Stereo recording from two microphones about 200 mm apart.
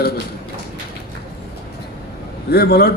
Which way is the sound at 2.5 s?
50° left (ahead or behind).